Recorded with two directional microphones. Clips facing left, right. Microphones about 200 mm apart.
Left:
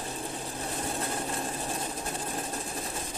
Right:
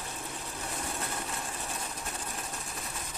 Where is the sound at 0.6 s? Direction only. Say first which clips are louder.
Left 4 dB; 35° left (ahead or behind).